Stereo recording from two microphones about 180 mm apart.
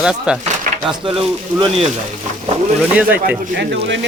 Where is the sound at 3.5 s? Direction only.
90° right.